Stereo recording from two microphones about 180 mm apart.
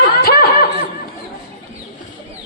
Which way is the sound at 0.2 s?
55° left (ahead or behind).